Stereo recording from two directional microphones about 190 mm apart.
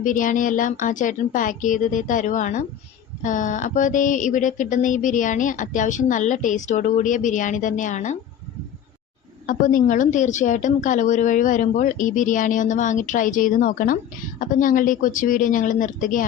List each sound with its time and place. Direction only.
0.0 s a woman's voice: 45° left (ahead or behind)
3.2 s music: 40° left (ahead or behind)
9.5 s a woman's voice: 45° left (ahead or behind)